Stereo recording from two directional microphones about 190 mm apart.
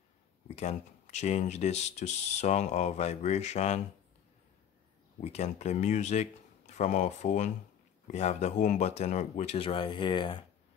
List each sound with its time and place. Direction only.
0.6 s speech: 35° left (ahead or behind)
5.2 s speech: 35° left (ahead or behind)